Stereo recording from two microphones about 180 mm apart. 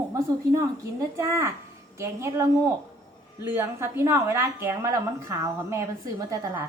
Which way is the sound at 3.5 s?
15° right (ahead or behind).